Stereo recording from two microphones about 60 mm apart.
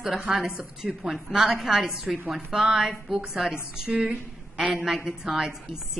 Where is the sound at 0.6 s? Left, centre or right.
Centre.